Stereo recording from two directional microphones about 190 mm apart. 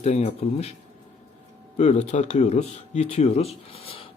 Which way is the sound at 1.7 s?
35° left (ahead or behind).